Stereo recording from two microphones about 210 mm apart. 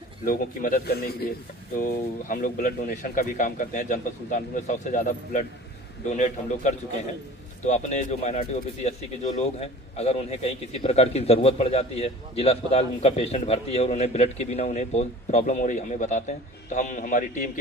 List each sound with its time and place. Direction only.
0.2 s a man's voice: 40° left (ahead or behind)